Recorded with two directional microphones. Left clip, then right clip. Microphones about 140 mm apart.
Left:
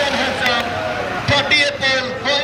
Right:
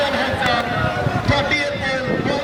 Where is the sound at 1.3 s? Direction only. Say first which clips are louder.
Left 5 dB; 10° left (ahead or behind).